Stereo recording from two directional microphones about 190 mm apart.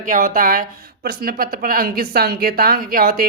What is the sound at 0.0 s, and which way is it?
A woman's voice, 45° right (ahead or behind).